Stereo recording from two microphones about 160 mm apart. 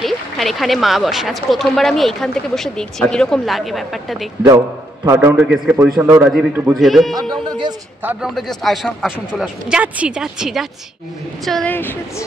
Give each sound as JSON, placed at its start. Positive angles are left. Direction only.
{"t": 0.0, "sound": "speech", "side_deg": 0}
{"t": 5.0, "sound": "a man's voice", "side_deg": -15}
{"t": 5.4, "sound": "speech", "side_deg": -5}
{"t": 7.2, "sound": "a sound", "side_deg": -30}
{"t": 8.0, "sound": "a man's voice", "side_deg": -10}
{"t": 8.4, "sound": "speech", "side_deg": 0}